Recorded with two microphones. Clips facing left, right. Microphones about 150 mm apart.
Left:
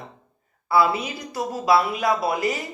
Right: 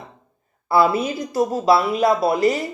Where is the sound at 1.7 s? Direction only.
30° right (ahead or behind).